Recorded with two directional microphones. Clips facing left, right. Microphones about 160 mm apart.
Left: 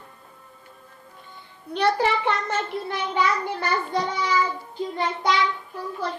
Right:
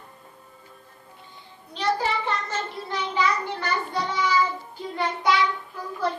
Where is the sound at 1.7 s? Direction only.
65° left (ahead or behind).